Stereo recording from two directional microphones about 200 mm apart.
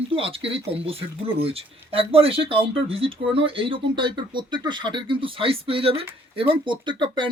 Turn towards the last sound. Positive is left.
turn(degrees=-25)  # may be behind; listen again after turning